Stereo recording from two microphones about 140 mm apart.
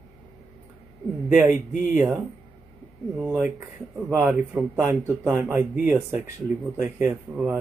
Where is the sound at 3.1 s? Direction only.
15° right (ahead or behind).